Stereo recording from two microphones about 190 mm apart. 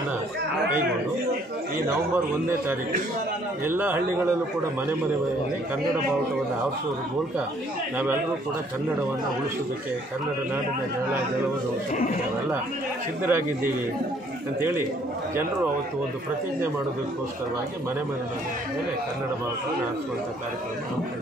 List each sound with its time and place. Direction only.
3.6 s a man's voice: 10° right (ahead or behind)
11.9 s speech: 40° left (ahead or behind)
13.2 s a man's voice: 10° right (ahead or behind)